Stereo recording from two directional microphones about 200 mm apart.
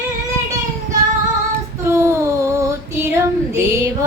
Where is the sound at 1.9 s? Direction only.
15° right (ahead or behind).